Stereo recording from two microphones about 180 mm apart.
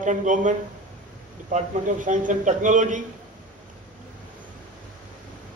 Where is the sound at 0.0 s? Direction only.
45° right (ahead or behind).